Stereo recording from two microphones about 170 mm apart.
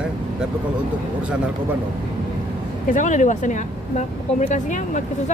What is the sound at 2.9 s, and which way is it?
Speech, 45° left (ahead or behind).